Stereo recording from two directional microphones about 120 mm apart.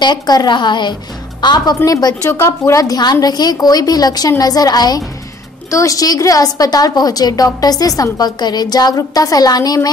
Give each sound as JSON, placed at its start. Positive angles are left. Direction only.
{"t": 0.0, "sound": "a woman's voice", "side_deg": 35}
{"t": 2.2, "sound": "a woman's voice", "side_deg": 25}